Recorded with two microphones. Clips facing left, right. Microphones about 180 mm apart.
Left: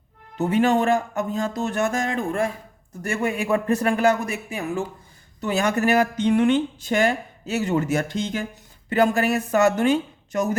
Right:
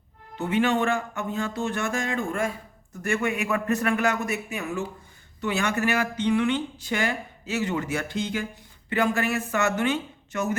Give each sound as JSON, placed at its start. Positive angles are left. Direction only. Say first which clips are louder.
{"t": 0.3, "sound": "speech", "louder": "left 4 dB", "side_deg": 40}